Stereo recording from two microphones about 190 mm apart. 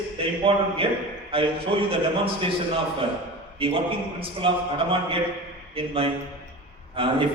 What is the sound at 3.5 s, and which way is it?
A man's voice, 30° right (ahead or behind).